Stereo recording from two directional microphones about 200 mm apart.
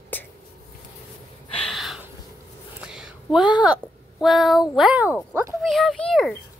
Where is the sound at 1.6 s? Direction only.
Centre (ahead or behind).